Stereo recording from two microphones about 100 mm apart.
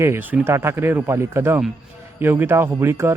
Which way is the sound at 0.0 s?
20° right (ahead or behind).